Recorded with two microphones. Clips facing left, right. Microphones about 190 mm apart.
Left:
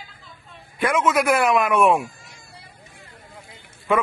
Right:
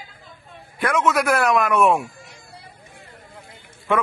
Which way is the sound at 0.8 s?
Centre (ahead or behind).